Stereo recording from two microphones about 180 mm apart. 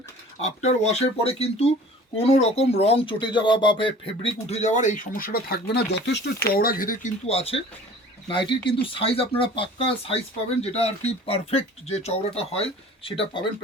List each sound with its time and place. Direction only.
0.4 s speech: 35° left (ahead or behind)
7.3 s speech: 35° left (ahead or behind)